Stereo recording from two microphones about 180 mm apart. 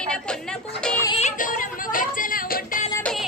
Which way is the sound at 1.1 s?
45° left (ahead or behind).